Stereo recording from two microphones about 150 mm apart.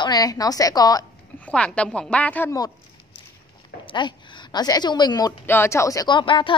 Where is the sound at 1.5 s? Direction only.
5° left (ahead or behind).